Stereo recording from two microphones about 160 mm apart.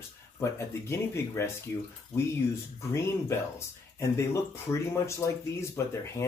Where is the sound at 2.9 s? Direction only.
15° left (ahead or behind).